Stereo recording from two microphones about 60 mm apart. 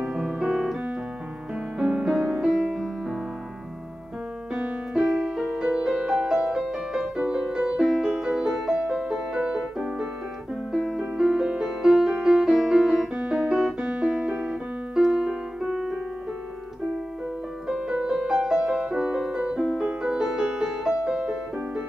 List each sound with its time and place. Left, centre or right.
0.0 s piano: centre
1.8 s music: centre
4.9 s music: centre
10.7 s music: centre
13.1 s piano: centre
13.8 s keyboard: centre
17.6 s music: centre